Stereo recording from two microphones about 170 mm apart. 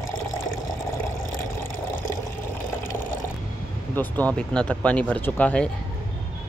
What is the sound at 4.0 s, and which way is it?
Speech, 10° left (ahead or behind).